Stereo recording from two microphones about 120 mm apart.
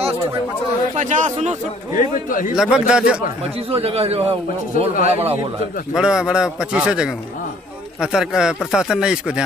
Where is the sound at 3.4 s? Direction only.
55° right (ahead or behind).